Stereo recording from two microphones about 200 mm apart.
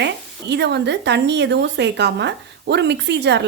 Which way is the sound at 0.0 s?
60° right (ahead or behind).